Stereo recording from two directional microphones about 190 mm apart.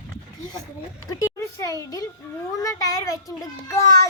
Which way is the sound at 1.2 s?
20° left (ahead or behind).